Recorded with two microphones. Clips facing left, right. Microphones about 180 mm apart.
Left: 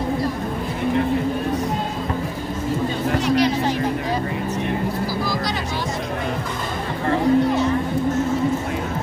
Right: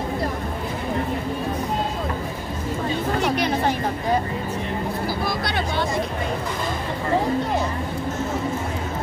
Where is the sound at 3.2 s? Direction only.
55° right (ahead or behind).